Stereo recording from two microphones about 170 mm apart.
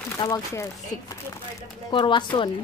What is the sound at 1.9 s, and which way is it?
Speech, 30° left (ahead or behind).